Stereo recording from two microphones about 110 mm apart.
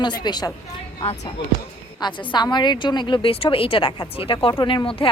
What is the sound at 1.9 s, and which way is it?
A woman's voice, 45° left (ahead or behind).